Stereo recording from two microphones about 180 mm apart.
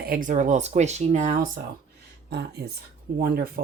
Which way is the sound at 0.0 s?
50° right (ahead or behind).